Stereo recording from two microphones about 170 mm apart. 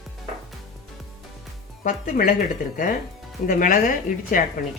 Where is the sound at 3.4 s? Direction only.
55° left (ahead or behind).